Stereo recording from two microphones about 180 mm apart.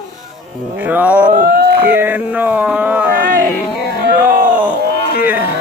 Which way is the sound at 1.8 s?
10° right (ahead or behind).